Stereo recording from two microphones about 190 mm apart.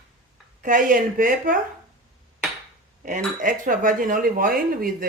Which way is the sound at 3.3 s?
40° right (ahead or behind).